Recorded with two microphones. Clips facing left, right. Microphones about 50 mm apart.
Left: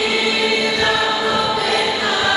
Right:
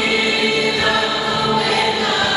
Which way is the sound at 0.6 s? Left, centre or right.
Centre.